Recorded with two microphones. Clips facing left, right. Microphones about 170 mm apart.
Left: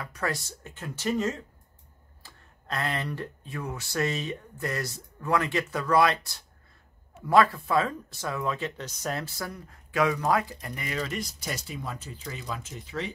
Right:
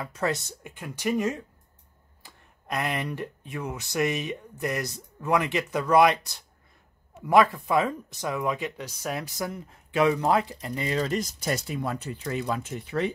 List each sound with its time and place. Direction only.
0.0 s speech: 20° right (ahead or behind)
11.0 s speech: 40° right (ahead or behind)
11.5 s speech: 60° right (ahead or behind)